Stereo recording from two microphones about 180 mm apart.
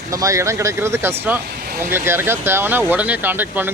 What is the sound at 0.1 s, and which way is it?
Speech, 20° right (ahead or behind).